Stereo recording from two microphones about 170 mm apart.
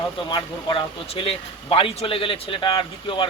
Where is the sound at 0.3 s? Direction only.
30° left (ahead or behind).